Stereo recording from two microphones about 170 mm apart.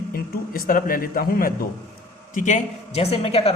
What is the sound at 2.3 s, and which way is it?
A woman's voice, 45° left (ahead or behind).